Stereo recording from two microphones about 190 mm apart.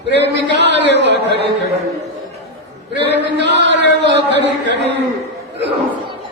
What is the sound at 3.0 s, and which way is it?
Speech, 65° right (ahead or behind).